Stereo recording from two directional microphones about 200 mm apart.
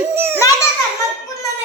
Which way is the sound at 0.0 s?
10° right (ahead or behind).